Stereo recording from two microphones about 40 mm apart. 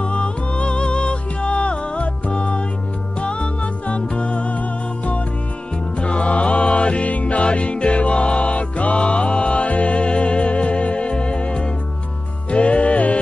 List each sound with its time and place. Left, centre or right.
0.0 s music: left